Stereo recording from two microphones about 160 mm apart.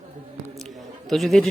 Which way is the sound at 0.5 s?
Centre (ahead or behind).